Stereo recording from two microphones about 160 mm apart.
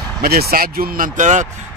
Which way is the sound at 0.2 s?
70° right (ahead or behind).